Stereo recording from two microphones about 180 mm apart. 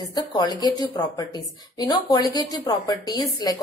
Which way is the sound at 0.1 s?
20° left (ahead or behind).